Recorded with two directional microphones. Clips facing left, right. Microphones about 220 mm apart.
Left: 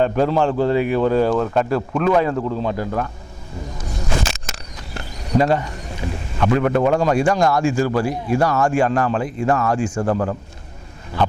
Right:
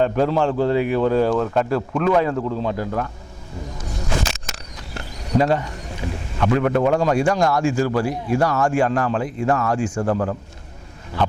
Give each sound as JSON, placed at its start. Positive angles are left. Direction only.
{"t": 0.0, "sound": "a man's voice", "side_deg": 15}
{"t": 4.1, "sound": "a sound", "side_deg": 10}
{"t": 6.4, "sound": "a man's voice", "side_deg": 15}
{"t": 10.0, "sound": "a man's voice", "side_deg": 25}